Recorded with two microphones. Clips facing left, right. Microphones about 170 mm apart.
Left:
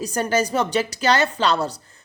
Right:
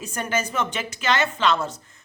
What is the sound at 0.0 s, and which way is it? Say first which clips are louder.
A woman's voice: left 5 dB; 35° left (ahead or behind).